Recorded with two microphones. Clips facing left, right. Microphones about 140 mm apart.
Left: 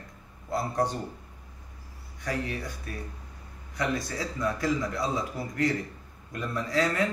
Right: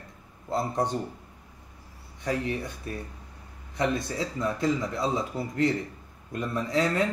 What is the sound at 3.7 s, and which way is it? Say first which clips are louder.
A man's voice: right 3 dB; 25° right (ahead or behind).